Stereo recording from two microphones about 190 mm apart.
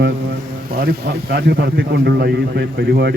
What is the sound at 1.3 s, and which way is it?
A man's voice, 60° right (ahead or behind).